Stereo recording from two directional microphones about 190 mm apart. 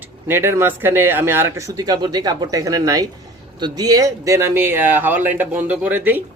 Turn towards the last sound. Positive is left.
turn(degrees=-10)  # may be behind; listen again after turning